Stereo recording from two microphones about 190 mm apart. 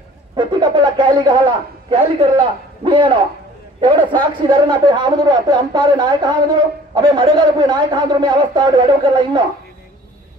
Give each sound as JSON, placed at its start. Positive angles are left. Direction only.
{"t": 0.4, "sound": "speech", "side_deg": -25}